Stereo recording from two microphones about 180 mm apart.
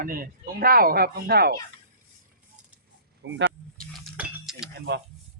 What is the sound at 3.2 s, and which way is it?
Speech, 90° right.